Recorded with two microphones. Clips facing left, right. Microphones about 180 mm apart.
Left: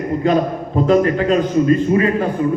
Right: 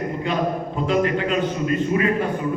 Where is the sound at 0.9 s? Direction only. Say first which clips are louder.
Left 6 dB; 40° left (ahead or behind).